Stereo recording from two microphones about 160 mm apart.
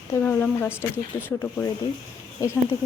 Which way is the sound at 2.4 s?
20° left (ahead or behind).